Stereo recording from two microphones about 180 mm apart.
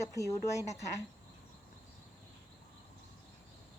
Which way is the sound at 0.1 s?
15° left (ahead or behind).